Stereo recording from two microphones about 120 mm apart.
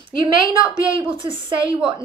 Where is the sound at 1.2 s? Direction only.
45° right (ahead or behind).